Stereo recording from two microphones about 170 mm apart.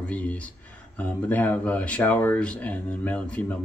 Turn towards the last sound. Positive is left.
turn(degrees=10)  # may be behind; listen again after turning